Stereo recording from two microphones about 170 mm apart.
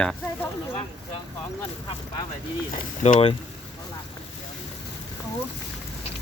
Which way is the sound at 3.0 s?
40° left (ahead or behind).